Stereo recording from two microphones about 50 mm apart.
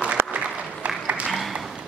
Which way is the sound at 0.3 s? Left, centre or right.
Right.